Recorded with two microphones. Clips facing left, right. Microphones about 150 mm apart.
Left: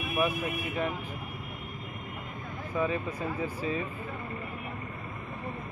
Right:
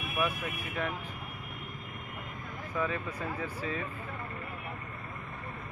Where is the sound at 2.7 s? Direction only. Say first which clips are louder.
Left 4 dB; 15° left (ahead or behind).